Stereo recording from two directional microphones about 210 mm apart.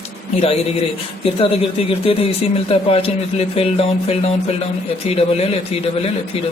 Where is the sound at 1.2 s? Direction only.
25° left (ahead or behind).